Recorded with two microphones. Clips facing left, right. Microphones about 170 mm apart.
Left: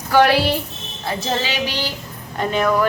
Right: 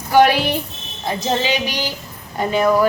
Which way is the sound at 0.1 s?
15° right (ahead or behind).